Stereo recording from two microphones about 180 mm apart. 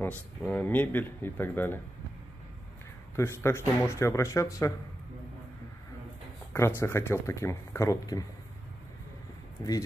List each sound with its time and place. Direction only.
0.0 s speech: 10° left (ahead or behind)
3.2 s speech: 15° left (ahead or behind)
6.8 s speech: 15° left (ahead or behind)
9.6 s speech: 20° left (ahead or behind)